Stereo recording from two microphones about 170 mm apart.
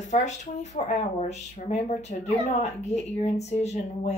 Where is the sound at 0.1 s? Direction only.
45° left (ahead or behind).